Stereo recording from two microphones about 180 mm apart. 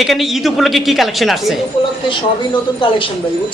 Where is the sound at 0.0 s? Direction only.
Centre (ahead or behind).